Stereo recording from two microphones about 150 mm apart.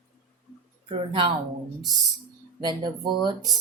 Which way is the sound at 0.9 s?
40° right (ahead or behind).